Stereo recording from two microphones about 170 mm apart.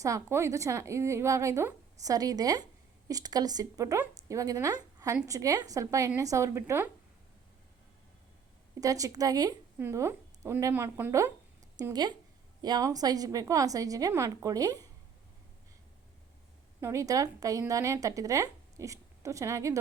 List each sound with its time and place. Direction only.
0.0 s a woman's voice: 15° right (ahead or behind)
8.8 s a woman's voice: 20° right (ahead or behind)
16.8 s speech: 20° right (ahead or behind)